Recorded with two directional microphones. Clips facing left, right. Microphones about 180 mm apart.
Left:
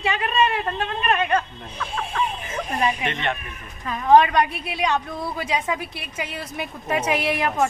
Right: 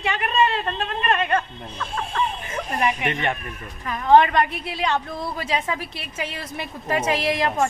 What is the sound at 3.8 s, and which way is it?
A woman's voice, 15° left (ahead or behind).